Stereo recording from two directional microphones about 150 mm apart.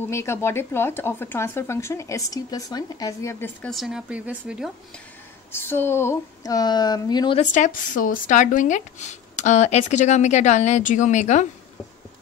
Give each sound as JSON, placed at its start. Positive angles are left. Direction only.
{"t": 0.1, "sound": "speech", "side_deg": 15}
{"t": 3.7, "sound": "speech", "side_deg": -5}
{"t": 5.5, "sound": "speech", "side_deg": 15}
{"t": 7.3, "sound": "speech", "side_deg": 60}